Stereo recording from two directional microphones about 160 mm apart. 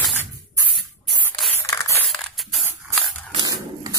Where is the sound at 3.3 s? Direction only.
25° right (ahead or behind).